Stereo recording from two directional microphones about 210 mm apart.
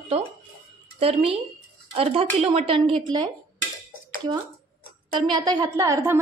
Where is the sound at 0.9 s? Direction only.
25° right (ahead or behind).